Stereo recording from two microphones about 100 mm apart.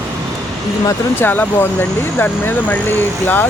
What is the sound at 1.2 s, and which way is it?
Speech, 15° left (ahead or behind).